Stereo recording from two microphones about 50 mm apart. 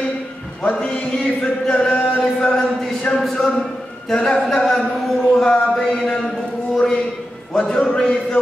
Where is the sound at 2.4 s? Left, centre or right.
Left.